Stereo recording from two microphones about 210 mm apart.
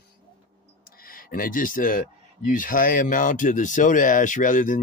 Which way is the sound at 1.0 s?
45° left (ahead or behind).